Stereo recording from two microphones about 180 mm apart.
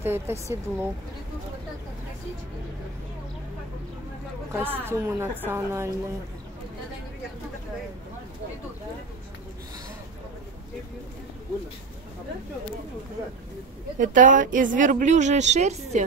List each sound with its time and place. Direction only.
0.0 s a woman's voice: 15° right (ahead or behind)
4.6 s a woman's voice: 10° right (ahead or behind)
13.9 s a woman's voice: 45° right (ahead or behind)